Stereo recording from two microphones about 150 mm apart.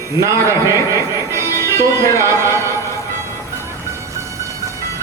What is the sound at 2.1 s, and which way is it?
Speech, 20° right (ahead or behind).